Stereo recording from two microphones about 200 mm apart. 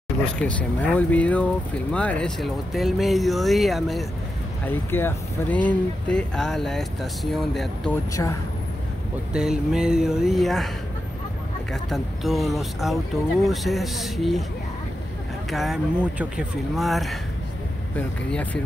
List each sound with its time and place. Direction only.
0.4 s speech: 5° left (ahead or behind)
4.6 s speech: 10° left (ahead or behind)
8.2 s speech: 15° left (ahead or behind)
9.3 s speech: 5° right (ahead or behind)
11.7 s speech: centre (ahead or behind)
15.5 s speech: centre (ahead or behind)